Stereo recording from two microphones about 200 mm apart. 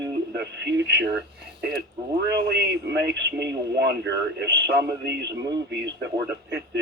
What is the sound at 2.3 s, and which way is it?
Speech, 55° right (ahead or behind).